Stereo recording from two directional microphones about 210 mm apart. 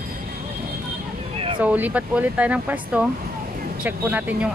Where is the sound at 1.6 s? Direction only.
5° right (ahead or behind).